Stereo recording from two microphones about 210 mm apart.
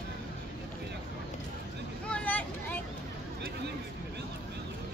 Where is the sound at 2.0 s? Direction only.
5° left (ahead or behind).